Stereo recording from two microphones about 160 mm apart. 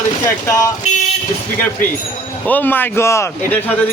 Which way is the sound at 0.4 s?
20° left (ahead or behind).